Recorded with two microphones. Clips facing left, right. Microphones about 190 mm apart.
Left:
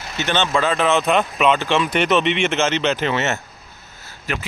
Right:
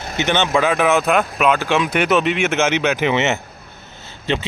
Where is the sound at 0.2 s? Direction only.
15° right (ahead or behind).